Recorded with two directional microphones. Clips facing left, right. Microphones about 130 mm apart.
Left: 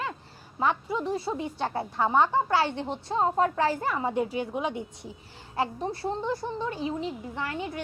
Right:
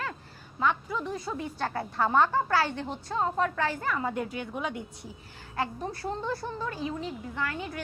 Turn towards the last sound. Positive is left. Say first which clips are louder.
# left 1 dB
turn(degrees=25)  # may be behind; listen again after turning